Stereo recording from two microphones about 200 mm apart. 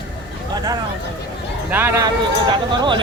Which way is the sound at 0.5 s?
20° right (ahead or behind).